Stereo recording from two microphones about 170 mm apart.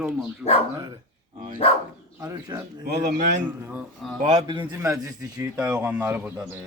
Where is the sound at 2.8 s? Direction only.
80° right.